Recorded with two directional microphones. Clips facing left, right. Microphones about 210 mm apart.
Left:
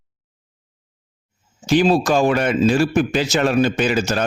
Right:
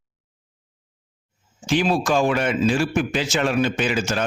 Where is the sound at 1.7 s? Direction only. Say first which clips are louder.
Left 5 dB; 35° left (ahead or behind).